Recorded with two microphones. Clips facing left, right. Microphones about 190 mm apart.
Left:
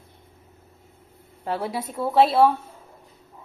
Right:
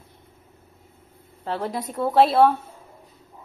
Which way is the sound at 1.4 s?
10° left (ahead or behind).